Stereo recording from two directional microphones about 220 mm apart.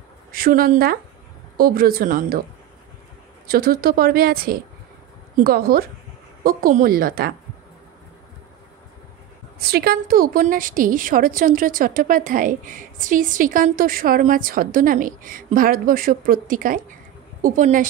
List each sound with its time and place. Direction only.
0.3 s a woman's voice: 40° right (ahead or behind)
3.4 s a woman's voice: 40° right (ahead or behind)
9.6 s a woman's voice: 45° right (ahead or behind)